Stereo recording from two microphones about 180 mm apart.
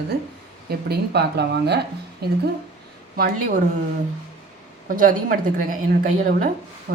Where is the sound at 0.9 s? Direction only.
65° right (ahead or behind).